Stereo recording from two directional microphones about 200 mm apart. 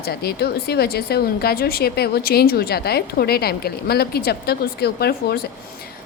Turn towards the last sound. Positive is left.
turn(degrees=50)  # may be behind; listen again after turning